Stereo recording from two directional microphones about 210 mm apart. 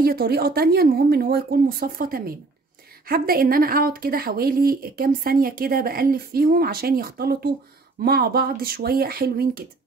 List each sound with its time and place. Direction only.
0.0 s speech: 45° right (ahead or behind)